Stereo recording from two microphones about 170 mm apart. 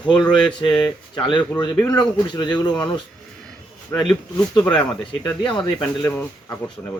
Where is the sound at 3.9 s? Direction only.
15° left (ahead or behind).